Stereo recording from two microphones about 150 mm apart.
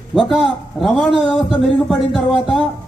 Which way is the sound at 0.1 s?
Centre (ahead or behind).